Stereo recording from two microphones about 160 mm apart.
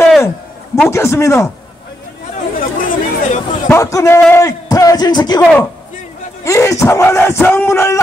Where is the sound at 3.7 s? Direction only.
20° left (ahead or behind).